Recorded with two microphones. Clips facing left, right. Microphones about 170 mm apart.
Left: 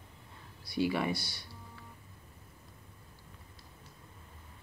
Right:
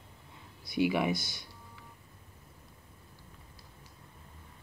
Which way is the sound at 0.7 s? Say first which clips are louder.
Right 3 dB; 15° right (ahead or behind).